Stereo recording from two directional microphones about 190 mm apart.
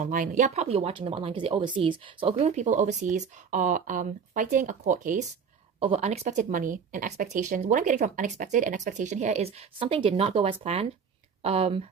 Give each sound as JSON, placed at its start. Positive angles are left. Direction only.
{"t": 0.0, "sound": "speech", "side_deg": -45}